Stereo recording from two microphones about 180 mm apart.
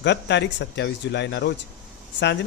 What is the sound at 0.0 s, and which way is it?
A man's voice, 75° left (ahead or behind).